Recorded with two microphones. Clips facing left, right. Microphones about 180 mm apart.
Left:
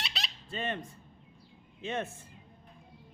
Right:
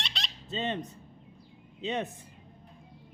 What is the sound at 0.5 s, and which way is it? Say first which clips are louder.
Speech: right 3 dB; 20° right (ahead or behind).